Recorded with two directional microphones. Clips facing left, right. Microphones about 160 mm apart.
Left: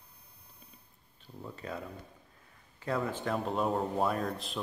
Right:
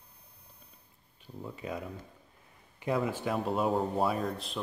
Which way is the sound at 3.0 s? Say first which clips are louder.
Even; 10° right (ahead or behind).